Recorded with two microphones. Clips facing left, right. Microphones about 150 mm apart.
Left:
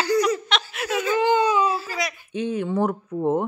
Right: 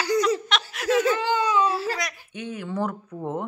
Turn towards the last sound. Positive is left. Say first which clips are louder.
# left 8 dB
turn(degrees=25)  # may be behind; listen again after turning